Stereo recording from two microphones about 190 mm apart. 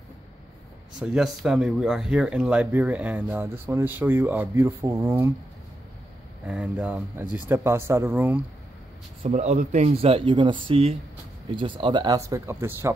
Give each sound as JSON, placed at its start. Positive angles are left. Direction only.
{"t": 0.9, "sound": "speech", "side_deg": -5}
{"t": 6.4, "sound": "speech", "side_deg": -5}
{"t": 9.2, "sound": "speech", "side_deg": -35}